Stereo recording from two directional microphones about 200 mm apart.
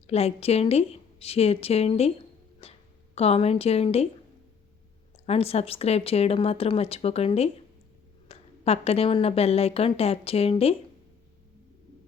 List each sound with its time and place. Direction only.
0.1 s a woman's voice: 30° left (ahead or behind)
2.6 s a sound: 30° left (ahead or behind)
3.2 s a woman's voice: 30° left (ahead or behind)
5.2 s a woman's voice: 30° left (ahead or behind)